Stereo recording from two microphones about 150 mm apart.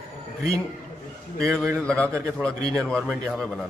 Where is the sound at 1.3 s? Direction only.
5° left (ahead or behind).